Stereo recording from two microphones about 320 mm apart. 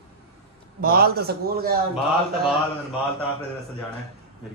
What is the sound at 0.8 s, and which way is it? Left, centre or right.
Speech, right.